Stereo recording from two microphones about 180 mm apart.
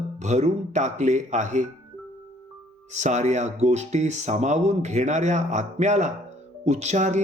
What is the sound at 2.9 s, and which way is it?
Speech, 40° right (ahead or behind).